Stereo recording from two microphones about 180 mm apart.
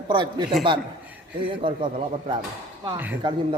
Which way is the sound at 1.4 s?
30° right (ahead or behind).